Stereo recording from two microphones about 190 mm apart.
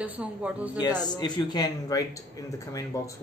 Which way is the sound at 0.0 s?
5° right (ahead or behind).